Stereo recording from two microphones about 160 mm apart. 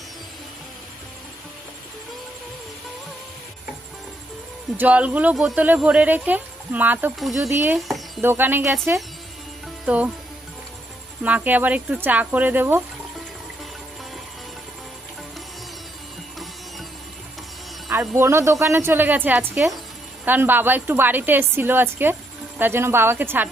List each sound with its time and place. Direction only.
4.8 s speech: 10° right (ahead or behind)
7.2 s speech: centre (ahead or behind)
7.9 s a sound: centre (ahead or behind)
8.2 s speech: 15° right (ahead or behind)
9.8 s speech: 10° right (ahead or behind)
11.2 s speech: 10° right (ahead or behind)
18.2 s speech: 15° right (ahead or behind)